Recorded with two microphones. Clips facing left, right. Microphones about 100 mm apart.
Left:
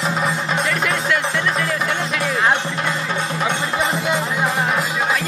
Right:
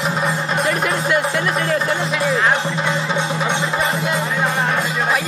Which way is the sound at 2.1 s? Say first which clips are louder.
Right 3 dB; 5° right (ahead or behind).